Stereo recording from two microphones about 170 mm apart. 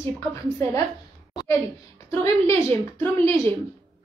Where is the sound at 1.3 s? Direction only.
20° left (ahead or behind).